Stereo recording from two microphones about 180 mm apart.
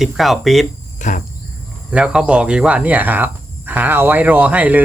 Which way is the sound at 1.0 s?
45° left (ahead or behind).